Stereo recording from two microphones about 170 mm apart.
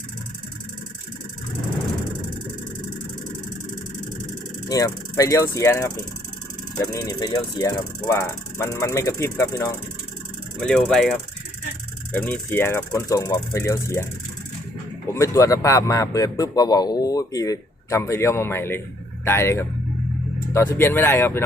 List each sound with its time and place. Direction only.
4.7 s speech: 20° left (ahead or behind)
10.7 s mechanisms: 5° left (ahead or behind)
12.1 s speech: 10° left (ahead or behind)
15.0 s a man's voice: 15° left (ahead or behind)